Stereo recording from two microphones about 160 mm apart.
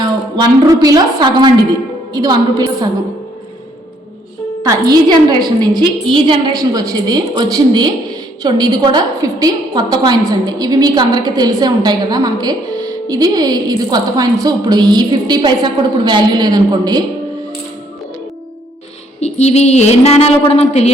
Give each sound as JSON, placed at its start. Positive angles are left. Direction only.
{"t": 0.9, "sound": "a woman's voice", "side_deg": -25}
{"t": 4.6, "sound": "a woman's voice", "side_deg": -25}
{"t": 19.2, "sound": "a woman's voice", "side_deg": 45}